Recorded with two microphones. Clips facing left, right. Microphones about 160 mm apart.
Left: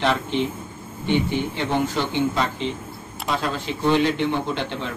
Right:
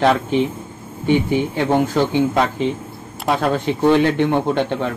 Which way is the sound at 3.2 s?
60° right (ahead or behind).